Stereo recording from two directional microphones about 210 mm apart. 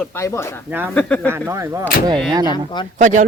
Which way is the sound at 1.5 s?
15° right (ahead or behind).